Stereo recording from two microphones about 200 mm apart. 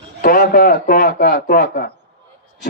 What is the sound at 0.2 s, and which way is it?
A man's voice, 45° left (ahead or behind).